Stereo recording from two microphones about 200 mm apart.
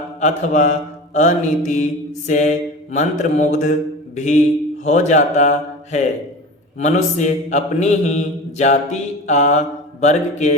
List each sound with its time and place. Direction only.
0.2 s mantra: 35° left (ahead or behind)